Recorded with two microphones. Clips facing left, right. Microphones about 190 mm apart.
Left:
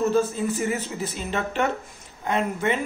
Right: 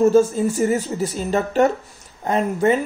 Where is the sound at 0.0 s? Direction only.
45° right (ahead or behind).